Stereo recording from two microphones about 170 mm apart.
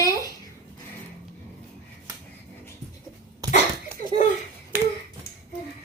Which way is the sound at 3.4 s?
20° right (ahead or behind).